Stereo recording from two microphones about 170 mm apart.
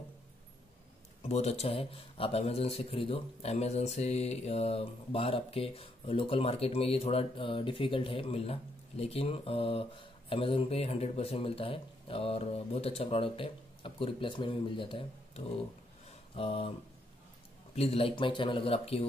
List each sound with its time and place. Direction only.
1.2 s speech: 40° left (ahead or behind)
17.7 s speech: 35° left (ahead or behind)